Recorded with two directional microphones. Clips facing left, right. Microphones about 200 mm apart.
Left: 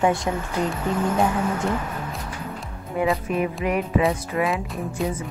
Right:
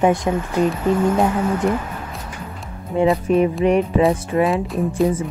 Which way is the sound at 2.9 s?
25° right (ahead or behind).